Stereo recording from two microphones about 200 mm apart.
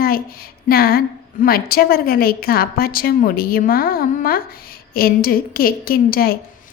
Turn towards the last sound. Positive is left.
turn(degrees=45)  # may be behind; listen again after turning